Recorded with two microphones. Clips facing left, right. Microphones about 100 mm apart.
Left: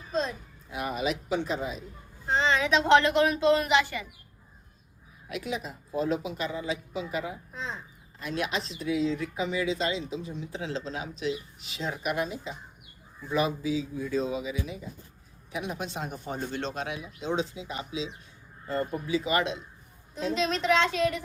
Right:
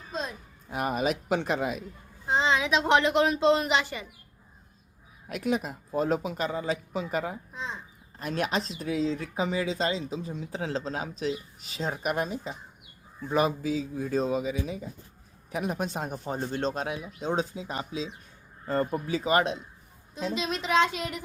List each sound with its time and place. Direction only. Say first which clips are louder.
0.7 s speech: right 2 dB; 45° right (ahead or behind); by 1.8 s 65° right (ahead or behind)
2.2 s a sound: even; 10° right (ahead or behind)
3.0 s speech: even; 20° right (ahead or behind)
5.3 s speech: right 5 dB; 50° right (ahead or behind)
20.3 s a child's voice: left 1 dB; 5° right (ahead or behind)